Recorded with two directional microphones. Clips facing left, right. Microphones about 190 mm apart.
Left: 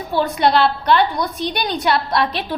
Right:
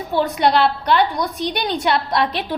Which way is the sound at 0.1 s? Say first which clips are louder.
Even; 15° right (ahead or behind).